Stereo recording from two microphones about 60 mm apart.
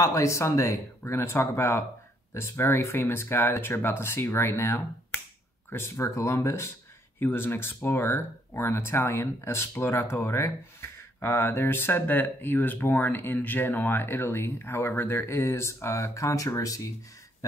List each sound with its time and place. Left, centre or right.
0.0 s speech: left
7.2 s speech: left